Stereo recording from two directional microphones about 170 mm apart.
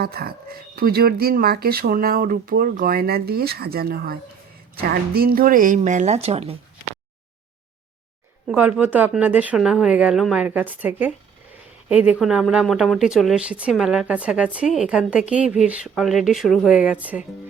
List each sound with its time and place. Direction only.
0.0 s a woman's voice: 65° right (ahead or behind); by 6.6 s 35° right (ahead or behind)
8.4 s speech: 5° right (ahead or behind)